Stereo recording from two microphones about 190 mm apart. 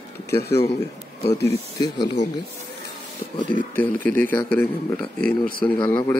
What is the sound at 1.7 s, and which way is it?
Speech, 20° left (ahead or behind).